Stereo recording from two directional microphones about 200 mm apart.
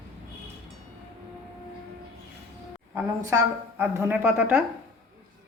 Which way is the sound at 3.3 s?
15° right (ahead or behind).